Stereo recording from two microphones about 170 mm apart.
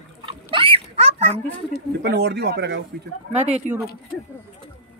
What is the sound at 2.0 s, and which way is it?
Speech, 75° right (ahead or behind).